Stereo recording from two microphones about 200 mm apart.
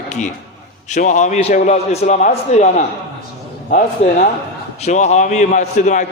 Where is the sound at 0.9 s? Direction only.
35° left (ahead or behind).